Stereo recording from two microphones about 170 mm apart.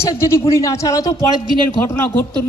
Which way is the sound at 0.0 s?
15° left (ahead or behind).